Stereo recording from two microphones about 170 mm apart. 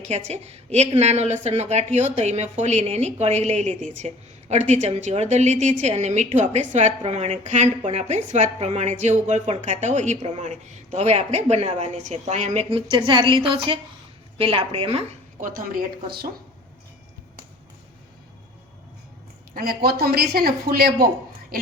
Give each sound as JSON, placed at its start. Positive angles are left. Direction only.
{"t": 0.0, "sound": "a woman's voice", "side_deg": -40}
{"t": 15.4, "sound": "speech", "side_deg": -50}
{"t": 19.5, "sound": "speech", "side_deg": -65}
{"t": 21.5, "sound": "music", "side_deg": -60}